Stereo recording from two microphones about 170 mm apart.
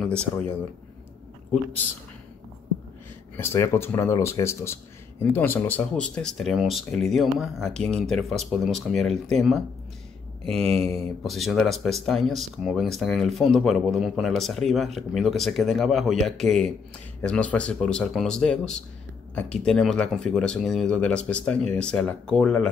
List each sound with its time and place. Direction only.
0.0 s speech: 5° left (ahead or behind)
3.3 s speech: 15° left (ahead or behind); by 9.6 s centre (ahead or behind)
10.6 s mantra: 35° right (ahead or behind)
10.9 s speech: centre (ahead or behind)